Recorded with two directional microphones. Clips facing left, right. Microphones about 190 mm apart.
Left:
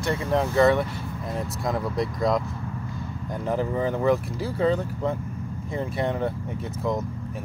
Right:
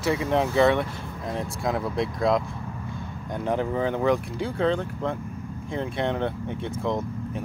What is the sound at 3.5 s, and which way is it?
Speech, 5° left (ahead or behind).